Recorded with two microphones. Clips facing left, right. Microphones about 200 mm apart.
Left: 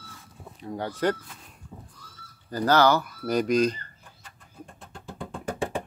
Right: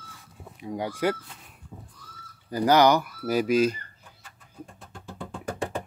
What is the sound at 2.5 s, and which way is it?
Speech, 10° right (ahead or behind).